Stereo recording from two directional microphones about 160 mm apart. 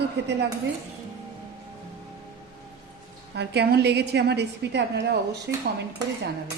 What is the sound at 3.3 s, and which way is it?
A woman's voice, 90° right.